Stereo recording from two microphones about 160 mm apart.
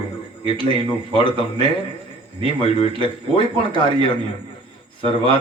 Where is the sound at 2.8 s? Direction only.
30° left (ahead or behind).